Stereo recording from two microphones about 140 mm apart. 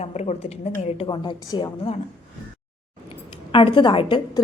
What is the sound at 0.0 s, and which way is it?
Speech, 50° left (ahead or behind).